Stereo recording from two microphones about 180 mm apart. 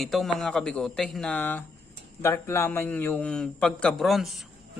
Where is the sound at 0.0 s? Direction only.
Centre (ahead or behind).